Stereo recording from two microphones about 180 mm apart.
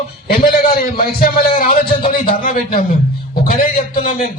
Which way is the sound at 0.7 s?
55° left (ahead or behind).